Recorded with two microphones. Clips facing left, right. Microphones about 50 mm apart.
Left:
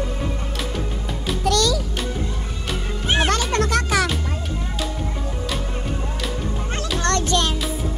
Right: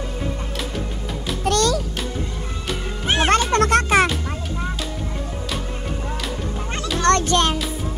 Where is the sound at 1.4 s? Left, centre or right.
Right.